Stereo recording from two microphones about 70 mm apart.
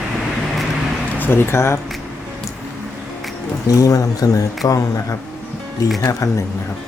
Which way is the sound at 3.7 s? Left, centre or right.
Left.